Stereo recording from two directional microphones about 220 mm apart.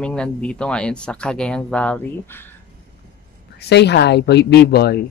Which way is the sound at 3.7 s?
50° left (ahead or behind).